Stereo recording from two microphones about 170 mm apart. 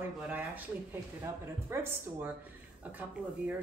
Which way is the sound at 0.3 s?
10° right (ahead or behind).